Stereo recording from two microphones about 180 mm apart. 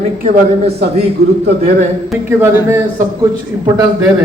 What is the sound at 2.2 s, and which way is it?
A man's voice, 15° right (ahead or behind).